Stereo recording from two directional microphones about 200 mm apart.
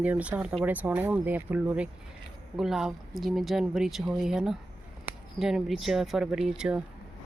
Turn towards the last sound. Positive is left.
turn(degrees=-5)  # may be behind; listen again after turning